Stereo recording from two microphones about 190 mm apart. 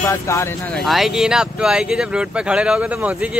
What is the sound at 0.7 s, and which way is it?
Speech, centre (ahead or behind).